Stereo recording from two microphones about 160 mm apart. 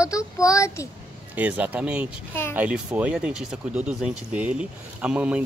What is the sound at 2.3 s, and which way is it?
Speech, 15° left (ahead or behind).